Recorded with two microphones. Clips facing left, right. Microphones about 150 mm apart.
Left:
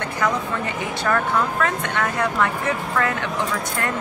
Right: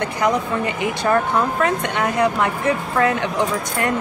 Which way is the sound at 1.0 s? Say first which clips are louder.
Right 3 dB; 20° right (ahead or behind).